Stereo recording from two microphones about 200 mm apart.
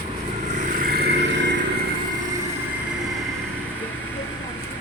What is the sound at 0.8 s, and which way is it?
Vehicle, 50° right (ahead or behind).